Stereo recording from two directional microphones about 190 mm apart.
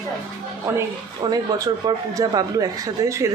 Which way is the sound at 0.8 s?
20° right (ahead or behind).